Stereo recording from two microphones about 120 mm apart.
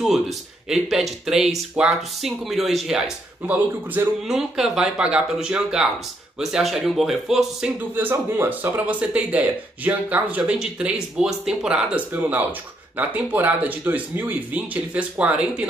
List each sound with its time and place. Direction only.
0.0 s speech: centre (ahead or behind)
4.3 s speech: 5° right (ahead or behind)
7.9 s speech: 15° right (ahead or behind)